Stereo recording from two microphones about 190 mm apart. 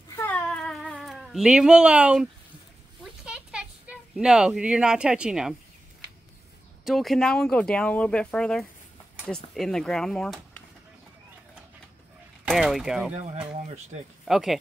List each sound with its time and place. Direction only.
0.1 s cat: 10° left (ahead or behind); by 2.2 s 5° right (ahead or behind)
3.0 s a sound: 5° right (ahead or behind)
6.8 s speech: centre (ahead or behind)
9.1 s a sound: 5° right (ahead or behind)
9.5 s speech: centre (ahead or behind)
12.4 s speech: centre (ahead or behind)
14.2 s speech: centre (ahead or behind)